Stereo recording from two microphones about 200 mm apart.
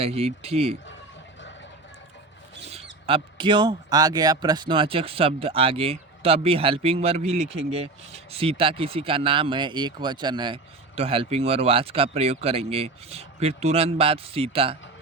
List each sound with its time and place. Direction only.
0.0 s speech: 30° right (ahead or behind)
3.1 s speech: 25° right (ahead or behind)